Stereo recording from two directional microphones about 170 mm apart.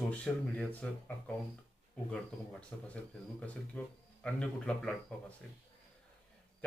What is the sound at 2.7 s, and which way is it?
Speech, 10° left (ahead or behind).